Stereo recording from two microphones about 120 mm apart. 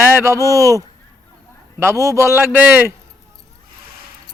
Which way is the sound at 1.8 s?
25° right (ahead or behind).